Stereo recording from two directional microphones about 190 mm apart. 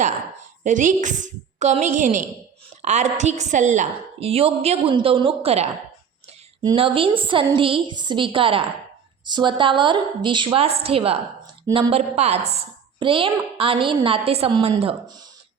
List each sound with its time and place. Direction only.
0.6 s a woman's voice: 45° right (ahead or behind)